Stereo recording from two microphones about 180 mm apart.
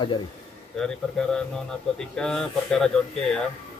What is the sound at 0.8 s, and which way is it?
Speech, 5° left (ahead or behind).